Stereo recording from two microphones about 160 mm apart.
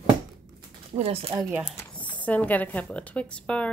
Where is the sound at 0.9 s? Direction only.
35° right (ahead or behind).